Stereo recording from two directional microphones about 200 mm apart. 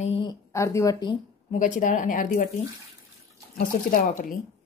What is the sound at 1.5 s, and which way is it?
Speech, 35° left (ahead or behind).